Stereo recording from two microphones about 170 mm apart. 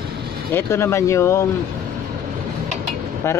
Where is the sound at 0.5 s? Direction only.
15° left (ahead or behind).